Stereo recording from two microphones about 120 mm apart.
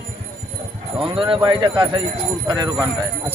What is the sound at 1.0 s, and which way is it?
Speech, 45° right (ahead or behind).